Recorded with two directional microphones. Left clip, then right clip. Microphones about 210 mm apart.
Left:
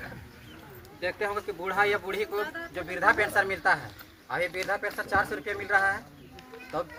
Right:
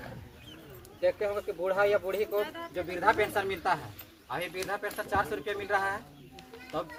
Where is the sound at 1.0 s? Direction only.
45° left (ahead or behind).